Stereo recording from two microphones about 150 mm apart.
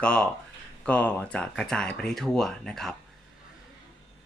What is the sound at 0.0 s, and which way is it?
Speech, 5° left (ahead or behind).